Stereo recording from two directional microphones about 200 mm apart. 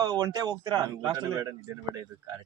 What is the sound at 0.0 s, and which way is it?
A man's voice, 20° right (ahead or behind).